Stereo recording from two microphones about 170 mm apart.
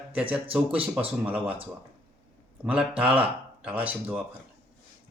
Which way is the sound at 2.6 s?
5° right (ahead or behind).